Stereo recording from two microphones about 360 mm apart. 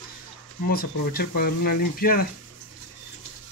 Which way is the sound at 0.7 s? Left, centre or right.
Left.